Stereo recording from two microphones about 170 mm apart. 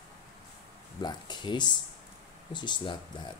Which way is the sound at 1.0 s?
25° left (ahead or behind).